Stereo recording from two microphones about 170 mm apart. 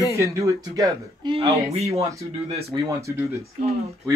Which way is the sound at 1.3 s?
35° right (ahead or behind).